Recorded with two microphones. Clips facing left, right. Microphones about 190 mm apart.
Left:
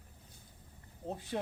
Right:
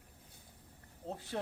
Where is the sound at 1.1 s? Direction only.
15° left (ahead or behind).